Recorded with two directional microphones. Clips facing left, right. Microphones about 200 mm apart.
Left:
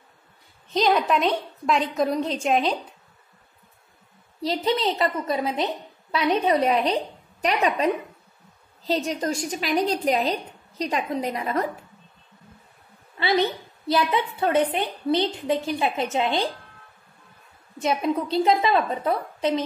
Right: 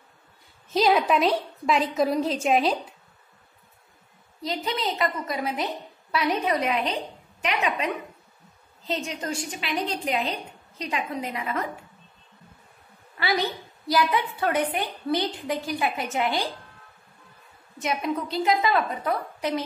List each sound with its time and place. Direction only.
0.7 s a woman's voice: 5° right (ahead or behind)
4.4 s a woman's voice: 30° left (ahead or behind)
13.2 s a woman's voice: 25° left (ahead or behind)
17.8 s a woman's voice: 30° left (ahead or behind)